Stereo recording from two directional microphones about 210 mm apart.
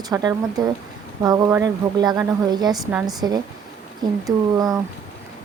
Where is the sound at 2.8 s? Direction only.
Centre (ahead or behind).